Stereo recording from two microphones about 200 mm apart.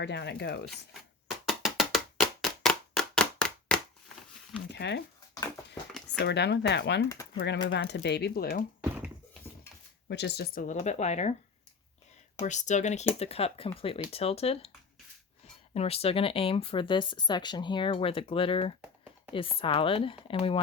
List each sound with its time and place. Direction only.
0.0 s speech: 60° left (ahead or behind)
1.5 s wood block: centre (ahead or behind)
2.4 s clapping: centre (ahead or behind)
4.7 s speech: 60° left (ahead or behind)
6.1 s speech: 60° left (ahead or behind)
10.1 s speech: 60° left (ahead or behind); by 11.3 s 35° left (ahead or behind)
12.4 s speech: 35° left (ahead or behind)
15.7 s speech: 30° left (ahead or behind)